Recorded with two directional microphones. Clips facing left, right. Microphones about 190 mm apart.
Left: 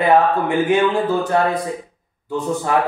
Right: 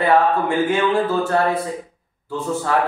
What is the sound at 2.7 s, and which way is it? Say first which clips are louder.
Speech: left 1 dB; 15° left (ahead or behind).